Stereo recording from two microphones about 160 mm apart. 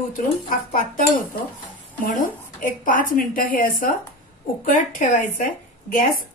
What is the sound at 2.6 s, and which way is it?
A woman's voice, 60° left (ahead or behind).